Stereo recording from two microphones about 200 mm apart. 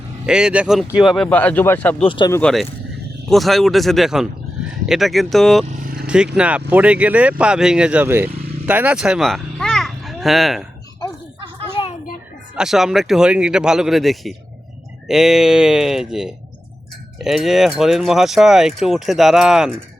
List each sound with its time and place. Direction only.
0.3 s speech: 5° right (ahead or behind)
2.0 s speech: 25° left (ahead or behind)
2.3 s speech: 5° left (ahead or behind)
5.8 s vehicle: 45° right (ahead or behind)
6.1 s a child's voice: 5° right (ahead or behind)
11.8 s children playing: 25° left (ahead or behind)
12.5 s speech: centre (ahead or behind)